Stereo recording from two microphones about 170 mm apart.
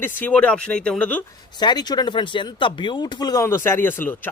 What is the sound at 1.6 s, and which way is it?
Speech, 25° left (ahead or behind).